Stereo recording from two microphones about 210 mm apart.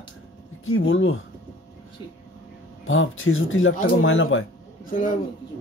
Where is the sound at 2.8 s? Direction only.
70° left (ahead or behind).